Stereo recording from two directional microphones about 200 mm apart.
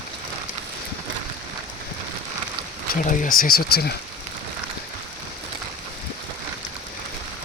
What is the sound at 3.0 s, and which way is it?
Speech, 40° left (ahead or behind).